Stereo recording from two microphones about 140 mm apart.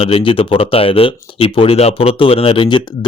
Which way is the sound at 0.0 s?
40° left (ahead or behind).